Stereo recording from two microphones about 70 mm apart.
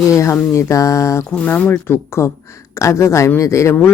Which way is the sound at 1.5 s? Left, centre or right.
Left.